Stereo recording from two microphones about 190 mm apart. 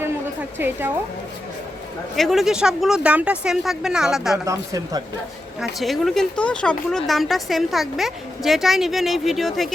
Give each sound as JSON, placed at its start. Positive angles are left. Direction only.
{"t": 2.1, "sound": "speech", "side_deg": 0}
{"t": 4.4, "sound": "speech", "side_deg": -20}
{"t": 5.5, "sound": "speech", "side_deg": 0}